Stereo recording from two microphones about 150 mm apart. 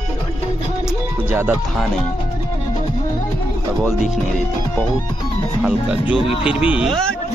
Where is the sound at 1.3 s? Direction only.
15° right (ahead or behind).